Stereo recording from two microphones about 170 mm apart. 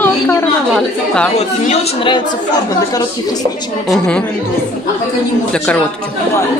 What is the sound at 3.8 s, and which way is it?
Speech, 5° left (ahead or behind).